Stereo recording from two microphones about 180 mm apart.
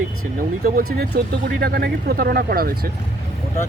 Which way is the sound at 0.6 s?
60° right (ahead or behind).